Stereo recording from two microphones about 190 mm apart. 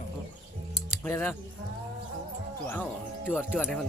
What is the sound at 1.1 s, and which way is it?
Speech, 15° left (ahead or behind).